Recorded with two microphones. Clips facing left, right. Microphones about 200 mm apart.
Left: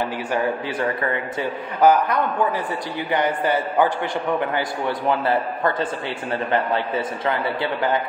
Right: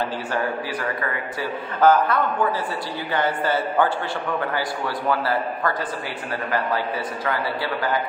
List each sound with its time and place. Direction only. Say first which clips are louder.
0.3 s a man's voice: left 2 dB; 20° left (ahead or behind)
7.2 s a man's voice: left 1 dB; 20° left (ahead or behind)